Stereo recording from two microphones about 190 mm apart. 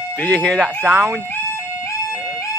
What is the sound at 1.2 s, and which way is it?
Music, 10° left (ahead or behind).